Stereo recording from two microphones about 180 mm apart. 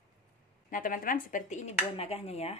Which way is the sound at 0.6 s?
50° left (ahead or behind).